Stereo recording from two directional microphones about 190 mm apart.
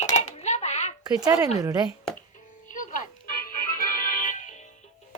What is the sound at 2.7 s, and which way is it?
Music, 45° left (ahead or behind).